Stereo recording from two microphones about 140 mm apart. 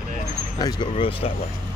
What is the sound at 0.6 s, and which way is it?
Speech, 35° left (ahead or behind).